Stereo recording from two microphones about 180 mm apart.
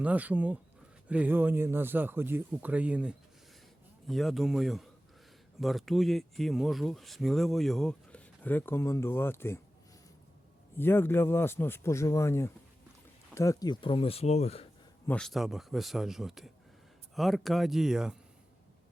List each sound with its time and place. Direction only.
0.0 s speech: 10° right (ahead or behind); by 9.6 s 15° left (ahead or behind)
10.8 s a man's voice: 10° left (ahead or behind); by 14.7 s 35° left (ahead or behind)
15.0 s speech: 5° left (ahead or behind)